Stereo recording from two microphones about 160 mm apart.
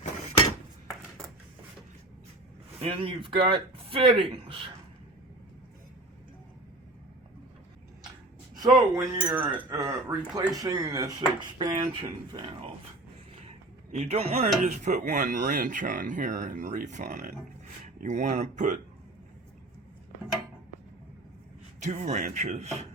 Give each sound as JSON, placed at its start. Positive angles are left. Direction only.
{"t": 2.8, "sound": "speech", "side_deg": -35}
{"t": 8.5, "sound": "speech", "side_deg": -25}
{"t": 13.9, "sound": "speech", "side_deg": -40}
{"t": 21.8, "sound": "speech", "side_deg": -45}